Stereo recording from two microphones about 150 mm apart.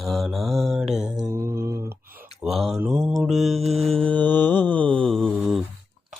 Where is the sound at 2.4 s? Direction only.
Centre (ahead or behind).